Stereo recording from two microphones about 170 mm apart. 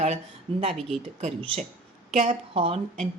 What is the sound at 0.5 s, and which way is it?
Speech, 35° right (ahead or behind).